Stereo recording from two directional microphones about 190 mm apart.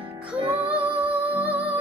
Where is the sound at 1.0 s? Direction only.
5° right (ahead or behind).